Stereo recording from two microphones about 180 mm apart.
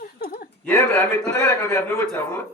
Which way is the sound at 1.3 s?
15° left (ahead or behind).